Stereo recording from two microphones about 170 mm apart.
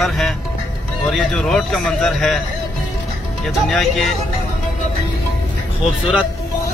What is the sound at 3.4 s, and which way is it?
Speech, centre (ahead or behind).